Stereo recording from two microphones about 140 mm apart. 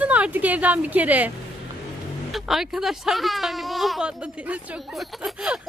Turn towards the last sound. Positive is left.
turn(degrees=-5)  # may be behind; listen again after turning